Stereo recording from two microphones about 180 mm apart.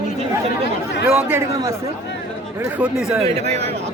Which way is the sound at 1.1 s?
10° right (ahead or behind).